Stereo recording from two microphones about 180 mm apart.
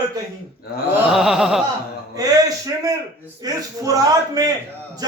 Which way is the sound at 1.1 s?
Centre (ahead or behind).